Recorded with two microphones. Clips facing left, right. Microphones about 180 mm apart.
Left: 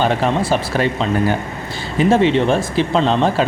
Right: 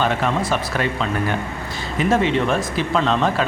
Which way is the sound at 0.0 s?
30° left (ahead or behind).